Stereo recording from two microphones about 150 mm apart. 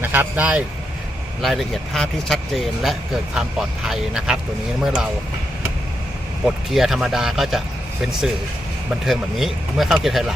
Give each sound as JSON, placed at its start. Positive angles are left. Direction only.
{"t": 0.0, "sound": "speech", "side_deg": -15}
{"t": 6.7, "sound": "speech", "side_deg": 0}
{"t": 9.0, "sound": "speech", "side_deg": 0}